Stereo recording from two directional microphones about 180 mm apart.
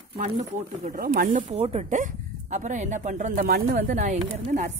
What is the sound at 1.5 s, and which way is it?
A woman's voice, 35° right (ahead or behind).